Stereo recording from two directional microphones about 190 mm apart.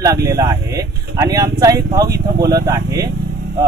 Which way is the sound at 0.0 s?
20° right (ahead or behind).